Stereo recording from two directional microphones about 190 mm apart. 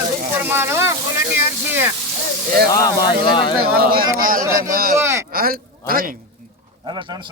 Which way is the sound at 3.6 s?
50° right (ahead or behind).